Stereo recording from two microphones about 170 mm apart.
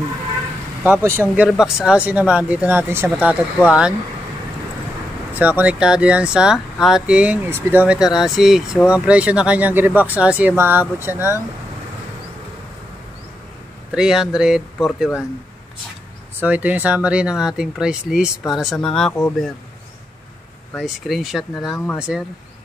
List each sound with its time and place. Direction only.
0.8 s speech: 10° right (ahead or behind)
5.3 s speech: 10° right (ahead or behind)
13.9 s speech: 5° right (ahead or behind)
16.3 s speech: 10° right (ahead or behind)
20.8 s speech: centre (ahead or behind)